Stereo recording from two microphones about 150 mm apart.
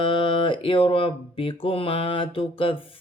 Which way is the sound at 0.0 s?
35° left (ahead or behind).